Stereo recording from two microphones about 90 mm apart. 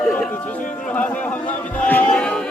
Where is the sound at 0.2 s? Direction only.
20° left (ahead or behind).